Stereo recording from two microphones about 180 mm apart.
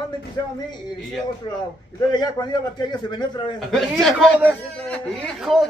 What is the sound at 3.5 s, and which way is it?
Speech, centre (ahead or behind).